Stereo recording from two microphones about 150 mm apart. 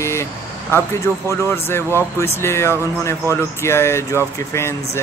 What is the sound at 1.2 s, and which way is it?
Speech, 15° left (ahead or behind).